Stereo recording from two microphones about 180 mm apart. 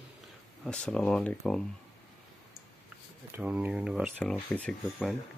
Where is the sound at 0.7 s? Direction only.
5° left (ahead or behind).